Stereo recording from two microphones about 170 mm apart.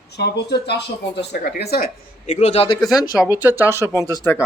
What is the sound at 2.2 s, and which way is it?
Speech, 40° left (ahead or behind).